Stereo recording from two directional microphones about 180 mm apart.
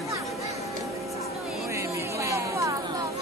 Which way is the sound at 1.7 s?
15° right (ahead or behind).